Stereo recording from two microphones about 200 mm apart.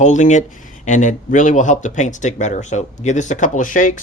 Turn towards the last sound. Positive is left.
turn(degrees=40)  # may be behind; listen again after turning